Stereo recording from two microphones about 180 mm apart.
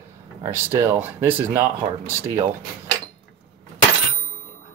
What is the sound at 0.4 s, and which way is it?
Speech, 15° right (ahead or behind).